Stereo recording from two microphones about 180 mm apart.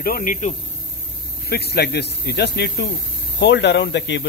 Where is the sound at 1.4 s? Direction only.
65° left (ahead or behind); by 4.2 s 80° left.